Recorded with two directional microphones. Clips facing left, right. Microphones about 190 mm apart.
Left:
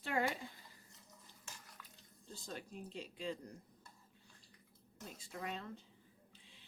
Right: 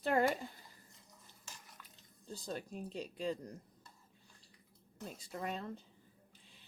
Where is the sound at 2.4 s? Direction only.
40° right (ahead or behind).